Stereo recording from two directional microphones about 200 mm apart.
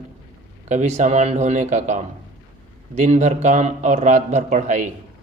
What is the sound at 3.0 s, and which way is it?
A man's voice, 35° right (ahead or behind).